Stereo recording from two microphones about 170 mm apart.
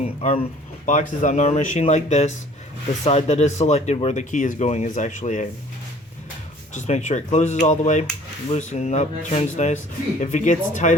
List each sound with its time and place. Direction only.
0.9 s speech: 45° left (ahead or behind)
6.7 s speech: 45° left (ahead or behind)